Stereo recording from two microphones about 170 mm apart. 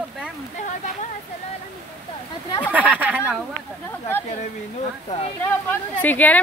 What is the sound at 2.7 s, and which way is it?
Speech, 10° right (ahead or behind).